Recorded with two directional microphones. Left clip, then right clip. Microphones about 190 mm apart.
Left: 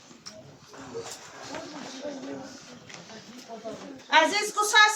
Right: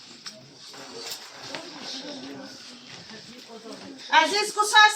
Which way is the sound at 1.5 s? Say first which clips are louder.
Right 1 dB; 35° left (ahead or behind).